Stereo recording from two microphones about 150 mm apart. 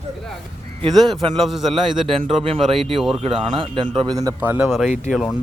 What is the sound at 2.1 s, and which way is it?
A man's voice, 40° right (ahead or behind).